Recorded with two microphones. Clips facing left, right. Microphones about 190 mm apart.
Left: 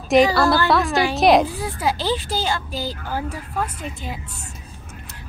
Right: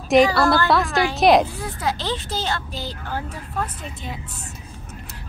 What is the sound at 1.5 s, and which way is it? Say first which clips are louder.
Speech: left 3 dB; 15° left (ahead or behind).